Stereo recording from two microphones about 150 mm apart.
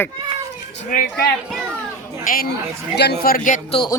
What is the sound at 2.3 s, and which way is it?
Speech, 65° left (ahead or behind).